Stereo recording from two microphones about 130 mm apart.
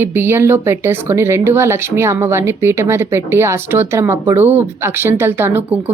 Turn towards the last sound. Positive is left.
turn(degrees=-15)  # may be behind; listen again after turning